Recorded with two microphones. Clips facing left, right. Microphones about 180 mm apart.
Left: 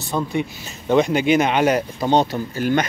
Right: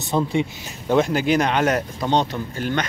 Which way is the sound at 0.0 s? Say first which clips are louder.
Right 2 dB; 25° right (ahead or behind).